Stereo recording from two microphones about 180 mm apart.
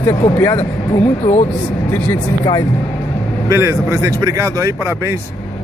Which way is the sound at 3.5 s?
15° right (ahead or behind).